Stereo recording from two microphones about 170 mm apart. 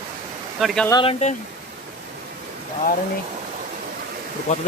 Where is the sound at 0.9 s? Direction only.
25° left (ahead or behind).